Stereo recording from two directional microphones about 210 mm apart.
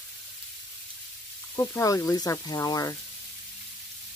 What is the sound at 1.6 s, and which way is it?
Speech, 15° left (ahead or behind).